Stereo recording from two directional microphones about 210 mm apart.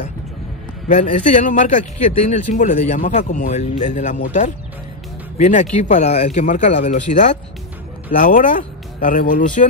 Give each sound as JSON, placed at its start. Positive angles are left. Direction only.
{"t": 0.8, "sound": "speech", "side_deg": 35}